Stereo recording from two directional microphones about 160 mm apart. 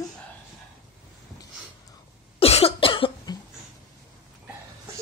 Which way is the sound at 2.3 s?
35° left (ahead or behind).